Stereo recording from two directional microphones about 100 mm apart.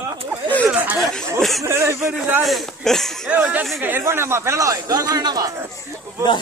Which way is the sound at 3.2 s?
15° right (ahead or behind).